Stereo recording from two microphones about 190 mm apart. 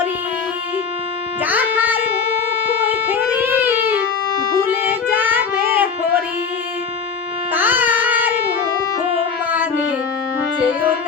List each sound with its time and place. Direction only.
1.5 s music: 10° right (ahead or behind)
7.5 s music: 10° right (ahead or behind)